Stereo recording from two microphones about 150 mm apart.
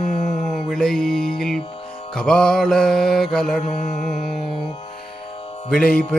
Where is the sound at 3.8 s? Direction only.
55° left (ahead or behind).